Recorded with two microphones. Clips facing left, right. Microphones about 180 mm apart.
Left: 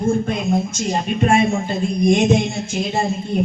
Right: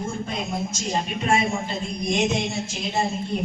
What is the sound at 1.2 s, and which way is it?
Speech, 50° left (ahead or behind).